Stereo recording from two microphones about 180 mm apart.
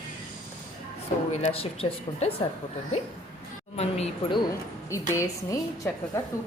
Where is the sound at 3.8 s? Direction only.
35° left (ahead or behind).